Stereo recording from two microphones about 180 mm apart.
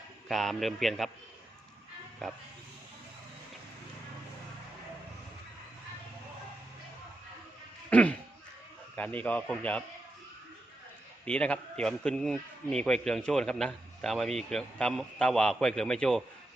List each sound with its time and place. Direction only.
0.3 s a man's voice: centre (ahead or behind)
7.9 s sheep: 5° left (ahead or behind)
9.0 s a man's voice: 10° left (ahead or behind)
11.3 s a man's voice: 5° left (ahead or behind)